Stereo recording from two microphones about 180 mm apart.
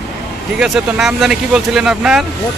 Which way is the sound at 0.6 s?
5° right (ahead or behind).